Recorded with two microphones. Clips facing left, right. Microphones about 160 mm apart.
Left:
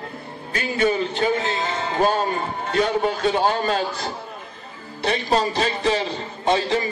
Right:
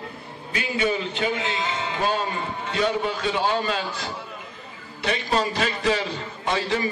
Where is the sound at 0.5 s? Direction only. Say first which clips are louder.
Left 3 dB; 45° left (ahead or behind); by 6.8 s 25° left (ahead or behind).